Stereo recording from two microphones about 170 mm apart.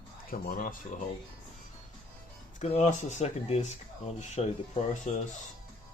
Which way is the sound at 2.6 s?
40° left (ahead or behind).